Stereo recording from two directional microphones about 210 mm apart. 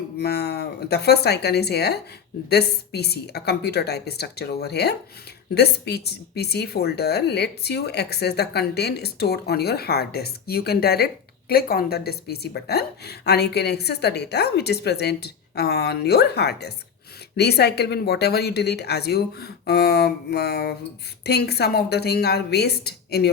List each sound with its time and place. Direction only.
0.2 s a woman's voice: 50° left (ahead or behind)